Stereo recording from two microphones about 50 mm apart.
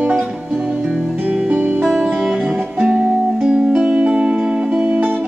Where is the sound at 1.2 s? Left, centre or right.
Right.